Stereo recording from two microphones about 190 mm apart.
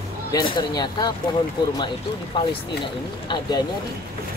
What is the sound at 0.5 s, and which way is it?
Speech, 20° left (ahead or behind).